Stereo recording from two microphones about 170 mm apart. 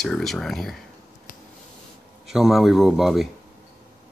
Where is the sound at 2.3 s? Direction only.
Centre (ahead or behind).